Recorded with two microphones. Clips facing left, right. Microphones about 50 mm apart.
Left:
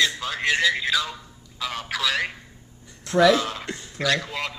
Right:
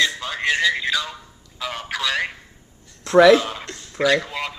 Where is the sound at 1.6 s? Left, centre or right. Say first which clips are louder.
Right 1 dB; centre.